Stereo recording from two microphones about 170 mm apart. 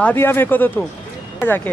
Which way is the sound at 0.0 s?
10° left (ahead or behind).